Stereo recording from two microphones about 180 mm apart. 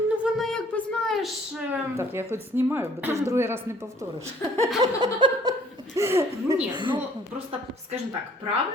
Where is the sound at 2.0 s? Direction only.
10° right (ahead or behind).